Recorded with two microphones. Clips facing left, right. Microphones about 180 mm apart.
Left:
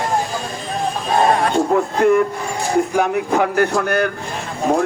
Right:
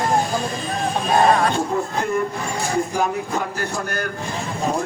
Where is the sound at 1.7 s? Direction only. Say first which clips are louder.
Left 8 dB; 65° left (ahead or behind).